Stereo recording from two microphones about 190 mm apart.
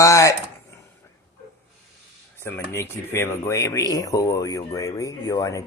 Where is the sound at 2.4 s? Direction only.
15° left (ahead or behind).